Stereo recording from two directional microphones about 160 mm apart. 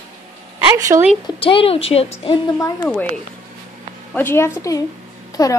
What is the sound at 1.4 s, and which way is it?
A woman's voice, 35° left (ahead or behind).